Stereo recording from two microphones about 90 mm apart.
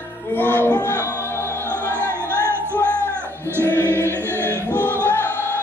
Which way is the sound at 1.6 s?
25° right (ahead or behind).